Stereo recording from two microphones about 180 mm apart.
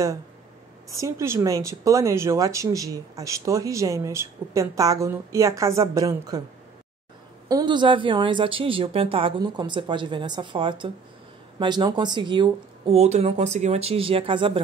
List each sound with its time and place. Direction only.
0.8 s speech: 15° right (ahead or behind)
7.4 s a woman's voice: 25° right (ahead or behind)